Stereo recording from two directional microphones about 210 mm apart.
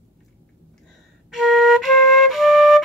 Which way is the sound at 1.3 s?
Centre (ahead or behind).